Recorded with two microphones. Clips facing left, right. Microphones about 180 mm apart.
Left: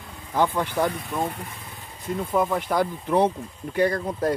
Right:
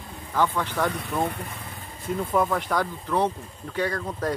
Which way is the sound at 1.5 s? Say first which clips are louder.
Right 2 dB; 60° right (ahead or behind).